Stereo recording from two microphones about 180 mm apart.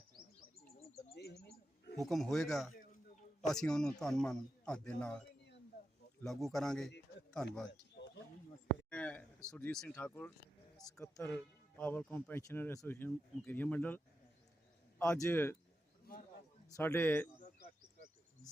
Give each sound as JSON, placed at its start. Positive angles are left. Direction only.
{"t": 1.1, "sound": "bird", "side_deg": 65}
{"t": 2.0, "sound": "speech", "side_deg": 0}
{"t": 6.2, "sound": "speech", "side_deg": 0}
{"t": 8.9, "sound": "speech", "side_deg": 5}
{"t": 16.1, "sound": "speech", "side_deg": 55}
{"t": 16.6, "sound": "speech", "side_deg": 15}